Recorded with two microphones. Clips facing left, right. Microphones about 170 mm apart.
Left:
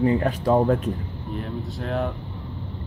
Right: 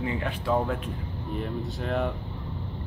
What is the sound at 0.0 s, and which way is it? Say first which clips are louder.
Speech: left 9 dB; 40° left (ahead or behind).